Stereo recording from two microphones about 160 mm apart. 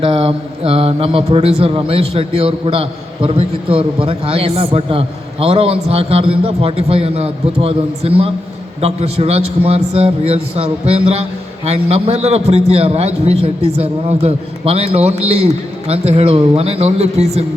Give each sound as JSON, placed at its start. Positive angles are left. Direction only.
{"t": 0.0, "sound": "a man's voice", "side_deg": -35}